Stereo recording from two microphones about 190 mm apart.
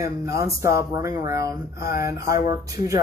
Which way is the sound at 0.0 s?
15° right (ahead or behind).